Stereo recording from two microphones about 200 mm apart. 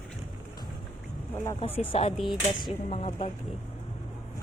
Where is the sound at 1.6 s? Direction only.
30° left (ahead or behind).